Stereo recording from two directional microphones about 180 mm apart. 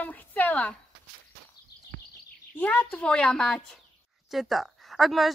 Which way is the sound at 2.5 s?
10° left (ahead or behind).